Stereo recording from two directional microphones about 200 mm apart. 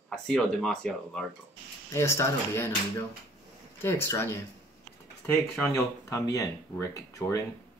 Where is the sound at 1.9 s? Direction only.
15° left (ahead or behind).